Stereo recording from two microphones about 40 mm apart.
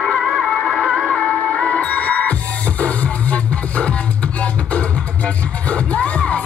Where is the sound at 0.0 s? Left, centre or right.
Centre.